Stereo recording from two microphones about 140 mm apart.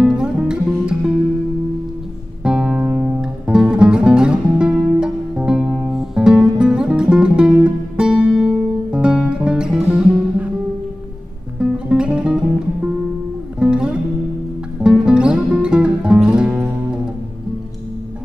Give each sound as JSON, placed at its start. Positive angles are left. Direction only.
{"t": 0.0, "sound": "music", "side_deg": -5}
{"t": 2.4, "sound": "music", "side_deg": -5}
{"t": 11.5, "sound": "music", "side_deg": -5}